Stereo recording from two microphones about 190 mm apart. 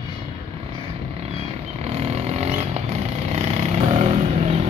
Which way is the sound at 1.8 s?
35° right (ahead or behind).